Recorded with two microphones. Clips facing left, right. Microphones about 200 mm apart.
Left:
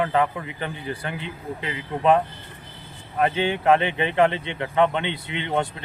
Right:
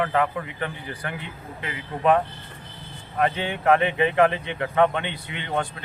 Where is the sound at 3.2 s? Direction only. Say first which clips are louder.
Left 2 dB; 25° left (ahead or behind).